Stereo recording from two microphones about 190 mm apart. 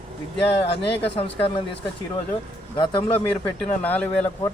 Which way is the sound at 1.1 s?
30° left (ahead or behind).